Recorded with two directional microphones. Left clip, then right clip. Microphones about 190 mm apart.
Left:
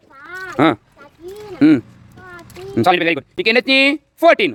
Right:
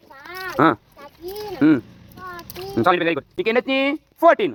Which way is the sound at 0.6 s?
35° left (ahead or behind).